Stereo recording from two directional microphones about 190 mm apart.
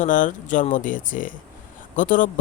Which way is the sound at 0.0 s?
45° left (ahead or behind).